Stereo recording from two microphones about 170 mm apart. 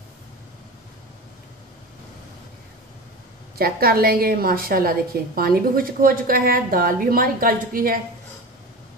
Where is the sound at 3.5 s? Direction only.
60° right (ahead or behind).